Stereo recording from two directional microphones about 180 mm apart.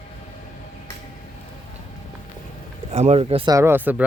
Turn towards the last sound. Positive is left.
turn(degrees=-10)  # may be behind; listen again after turning